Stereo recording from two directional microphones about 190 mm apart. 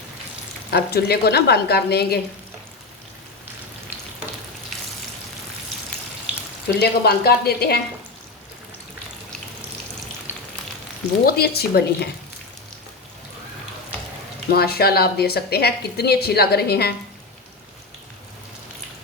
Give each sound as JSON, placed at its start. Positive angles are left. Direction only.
{"t": 0.7, "sound": "a woman's voice", "side_deg": 55}
{"t": 6.7, "sound": "a woman's voice", "side_deg": 55}
{"t": 10.3, "sound": "frying", "side_deg": -10}
{"t": 11.3, "sound": "a woman's voice", "side_deg": 55}
{"t": 14.5, "sound": "a woman's voice", "side_deg": 55}